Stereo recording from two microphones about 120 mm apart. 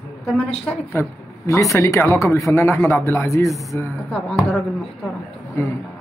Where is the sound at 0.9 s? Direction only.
20° left (ahead or behind).